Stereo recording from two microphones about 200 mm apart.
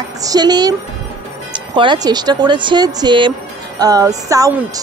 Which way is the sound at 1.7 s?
20° right (ahead or behind).